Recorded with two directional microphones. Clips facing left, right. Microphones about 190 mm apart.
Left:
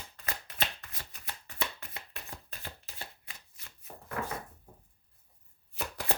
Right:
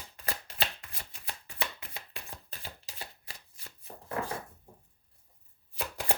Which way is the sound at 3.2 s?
35° right (ahead or behind).